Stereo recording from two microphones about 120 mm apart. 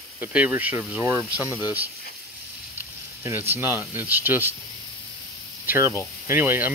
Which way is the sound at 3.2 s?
20° right (ahead or behind).